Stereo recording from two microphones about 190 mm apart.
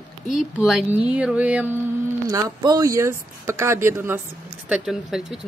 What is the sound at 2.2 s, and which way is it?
Speech, 20° right (ahead or behind).